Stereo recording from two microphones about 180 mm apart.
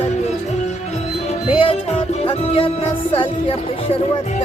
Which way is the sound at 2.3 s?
30° left (ahead or behind).